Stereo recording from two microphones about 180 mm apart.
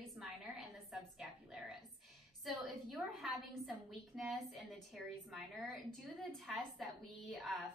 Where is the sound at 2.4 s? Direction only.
Centre (ahead or behind).